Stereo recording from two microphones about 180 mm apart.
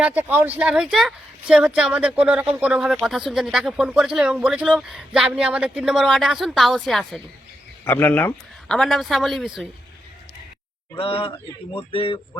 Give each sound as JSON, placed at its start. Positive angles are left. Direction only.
{"t": 0.0, "sound": "speech", "side_deg": -10}
{"t": 7.9, "sound": "speech", "side_deg": 10}
{"t": 10.9, "sound": "speech", "side_deg": 30}